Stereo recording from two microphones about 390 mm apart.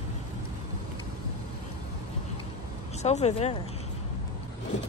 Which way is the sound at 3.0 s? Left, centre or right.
Centre.